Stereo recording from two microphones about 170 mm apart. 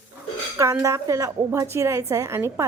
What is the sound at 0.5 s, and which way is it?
A woman's voice, 20° right (ahead or behind).